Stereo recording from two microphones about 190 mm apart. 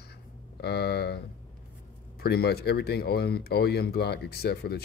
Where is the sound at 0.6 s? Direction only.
60° left (ahead or behind).